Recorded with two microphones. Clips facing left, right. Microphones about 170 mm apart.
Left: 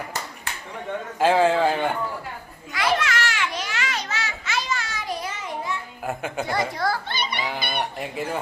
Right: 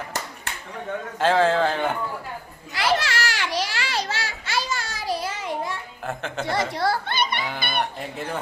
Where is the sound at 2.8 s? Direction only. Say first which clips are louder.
Even; 30° right (ahead or behind).